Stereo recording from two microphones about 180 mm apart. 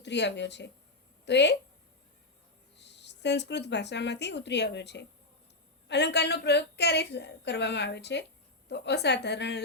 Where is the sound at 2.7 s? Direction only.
75° left (ahead or behind).